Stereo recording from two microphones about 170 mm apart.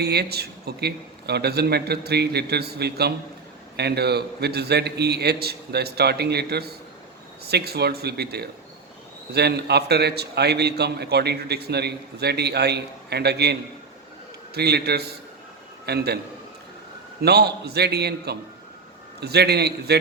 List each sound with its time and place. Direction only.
0.0 s a man's voice: 70° right (ahead or behind)
17.2 s a man's voice: 70° right (ahead or behind)